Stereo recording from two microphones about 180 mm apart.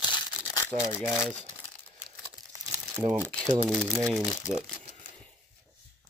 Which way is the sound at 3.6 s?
5° right (ahead or behind).